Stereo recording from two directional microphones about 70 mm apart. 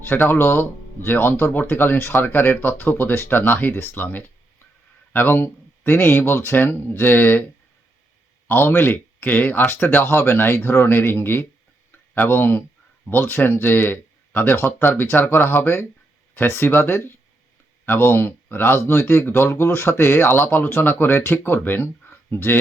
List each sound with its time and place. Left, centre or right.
0.0 s speech: left
8.4 s speech: left
11.9 s a sound: left
13.3 s speech: left